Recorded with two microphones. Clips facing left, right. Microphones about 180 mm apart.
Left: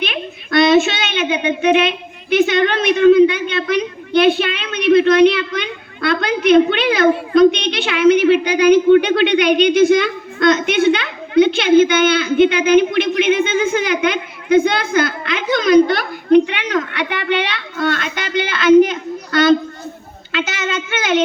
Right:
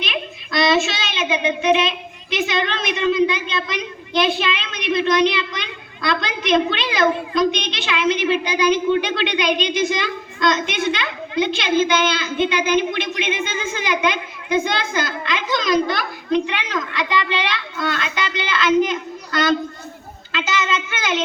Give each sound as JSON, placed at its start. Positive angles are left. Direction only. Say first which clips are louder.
{"t": 0.0, "sound": "a child's voice", "louder": "left 4 dB", "side_deg": 60}